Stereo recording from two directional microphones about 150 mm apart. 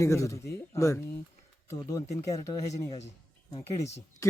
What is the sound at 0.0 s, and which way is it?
Speech, 20° left (ahead or behind).